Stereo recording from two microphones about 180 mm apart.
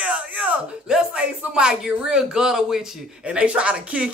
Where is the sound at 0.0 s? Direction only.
5° right (ahead or behind).